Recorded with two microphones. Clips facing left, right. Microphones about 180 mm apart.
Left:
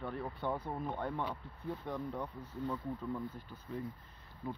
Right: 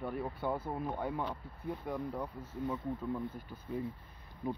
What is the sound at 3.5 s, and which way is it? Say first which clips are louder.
Speech: right 3 dB; 10° right (ahead or behind).